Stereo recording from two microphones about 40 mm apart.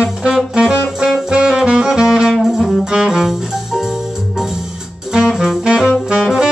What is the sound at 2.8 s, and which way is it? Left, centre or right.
Music, centre.